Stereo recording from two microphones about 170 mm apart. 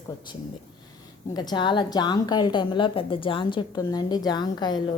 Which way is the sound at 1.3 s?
25° left (ahead or behind).